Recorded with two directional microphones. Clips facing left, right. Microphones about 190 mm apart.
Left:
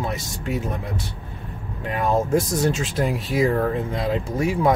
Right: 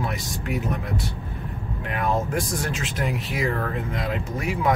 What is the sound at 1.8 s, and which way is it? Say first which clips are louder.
Speech: left 4 dB; 25° left (ahead or behind).